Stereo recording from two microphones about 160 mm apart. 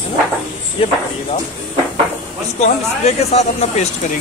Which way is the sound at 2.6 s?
45° left (ahead or behind).